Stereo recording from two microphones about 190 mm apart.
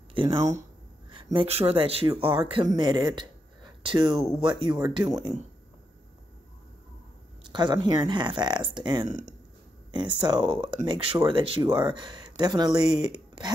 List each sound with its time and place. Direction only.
0.1 s a sound: 25° right (ahead or behind)
0.4 s speech: 15° right (ahead or behind)
1.1 s speech: 25° right (ahead or behind)
7.4 s speech: 25° right (ahead or behind)